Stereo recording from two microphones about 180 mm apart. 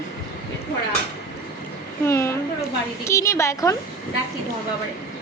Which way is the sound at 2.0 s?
15° left (ahead or behind).